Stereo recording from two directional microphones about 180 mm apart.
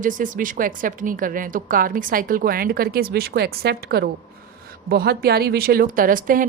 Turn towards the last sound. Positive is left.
turn(degrees=-50)  # may be behind; listen again after turning